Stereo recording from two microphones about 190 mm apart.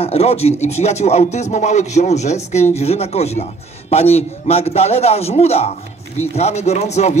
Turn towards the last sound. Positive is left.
turn(degrees=35)  # may be behind; listen again after turning